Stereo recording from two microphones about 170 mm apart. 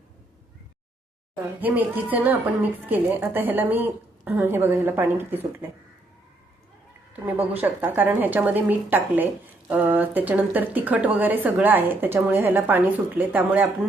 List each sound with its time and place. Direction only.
1.6 s speech: 10° right (ahead or behind)
7.1 s speech: 10° right (ahead or behind)